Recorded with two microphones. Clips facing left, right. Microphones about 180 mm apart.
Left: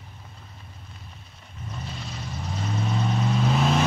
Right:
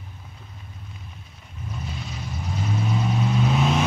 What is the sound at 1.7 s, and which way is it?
Vehicle, centre (ahead or behind).